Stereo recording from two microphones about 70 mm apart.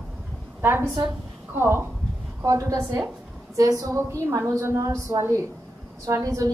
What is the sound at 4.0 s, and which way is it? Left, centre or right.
A woman's voice, right.